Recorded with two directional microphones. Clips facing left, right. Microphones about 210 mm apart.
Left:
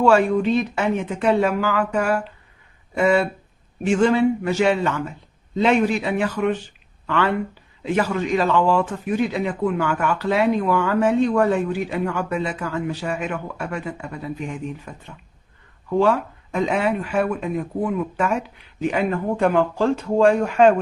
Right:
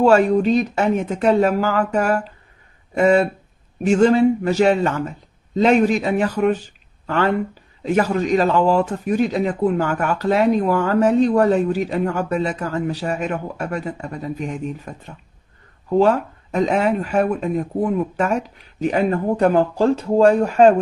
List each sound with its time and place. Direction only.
0.0 s a man's voice: 40° right (ahead or behind)